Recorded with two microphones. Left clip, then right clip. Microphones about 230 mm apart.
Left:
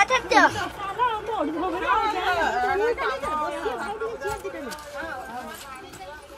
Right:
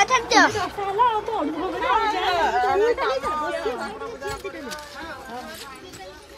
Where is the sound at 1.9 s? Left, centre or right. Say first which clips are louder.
Right 2 dB; right.